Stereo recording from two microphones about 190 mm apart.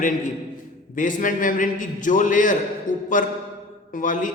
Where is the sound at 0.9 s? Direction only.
45° left (ahead or behind).